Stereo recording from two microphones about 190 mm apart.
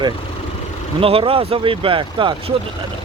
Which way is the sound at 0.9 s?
30° right (ahead or behind).